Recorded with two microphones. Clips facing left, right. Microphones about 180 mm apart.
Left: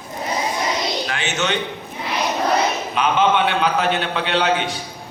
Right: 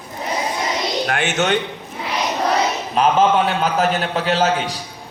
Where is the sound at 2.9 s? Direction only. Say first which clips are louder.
Right 3 dB; 40° right (ahead or behind).